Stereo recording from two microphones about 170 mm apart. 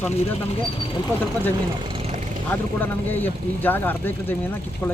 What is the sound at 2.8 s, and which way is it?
Speech, 10° left (ahead or behind).